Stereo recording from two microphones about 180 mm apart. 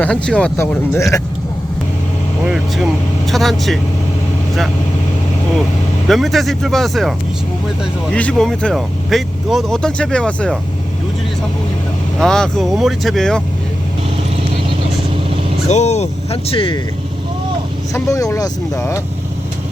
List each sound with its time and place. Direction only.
0.0 s speech: 5° left (ahead or behind)
2.5 s speech: centre (ahead or behind)
6.1 s speech: centre (ahead or behind)
8.1 s speech: 5° left (ahead or behind)
12.2 s speech: 5° left (ahead or behind)
15.7 s speech: 40° left (ahead or behind)
17.9 s speech: 15° left (ahead or behind)